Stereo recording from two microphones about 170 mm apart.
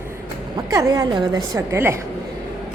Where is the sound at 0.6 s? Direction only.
20° right (ahead or behind).